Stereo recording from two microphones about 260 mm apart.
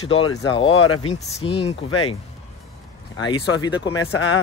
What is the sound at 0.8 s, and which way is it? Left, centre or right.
Speech, left.